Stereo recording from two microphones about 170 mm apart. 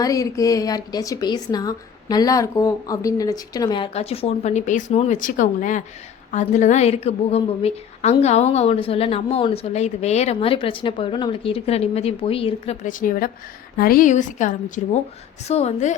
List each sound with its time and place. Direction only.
0.0 s a woman's voice: 20° left (ahead or behind)
3.9 s a woman's voice: 35° left (ahead or behind)